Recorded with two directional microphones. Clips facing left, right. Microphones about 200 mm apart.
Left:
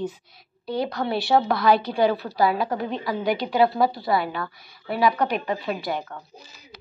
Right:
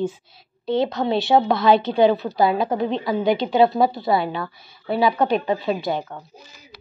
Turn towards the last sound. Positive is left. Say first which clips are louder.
# right 4 dB
turn(degrees=-25)  # may be behind; listen again after turning